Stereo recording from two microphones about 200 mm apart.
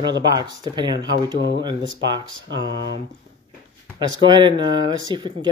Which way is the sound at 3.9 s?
25° right (ahead or behind).